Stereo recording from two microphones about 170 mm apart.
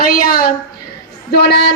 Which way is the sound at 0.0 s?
55° left (ahead or behind).